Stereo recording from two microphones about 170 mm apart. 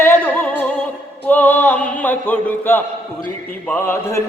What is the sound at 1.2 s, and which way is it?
Chant, 10° left (ahead or behind).